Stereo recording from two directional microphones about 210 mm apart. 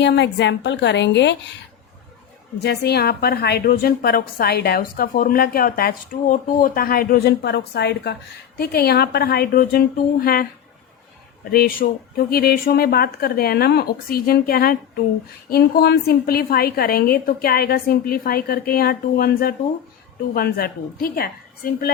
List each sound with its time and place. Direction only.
0.0 s a woman's voice: 55° left (ahead or behind)
2.6 s a woman's voice: 50° left (ahead or behind)
11.5 s a woman's voice: 45° left (ahead or behind)